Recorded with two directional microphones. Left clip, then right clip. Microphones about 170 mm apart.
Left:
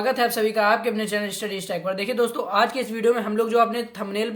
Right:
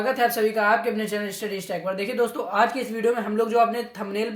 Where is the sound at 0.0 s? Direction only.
Centre (ahead or behind).